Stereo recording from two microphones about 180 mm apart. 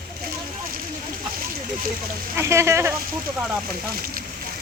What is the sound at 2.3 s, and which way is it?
Speech, 15° right (ahead or behind).